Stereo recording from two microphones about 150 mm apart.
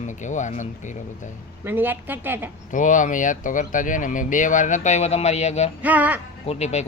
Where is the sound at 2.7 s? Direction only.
60° left (ahead or behind).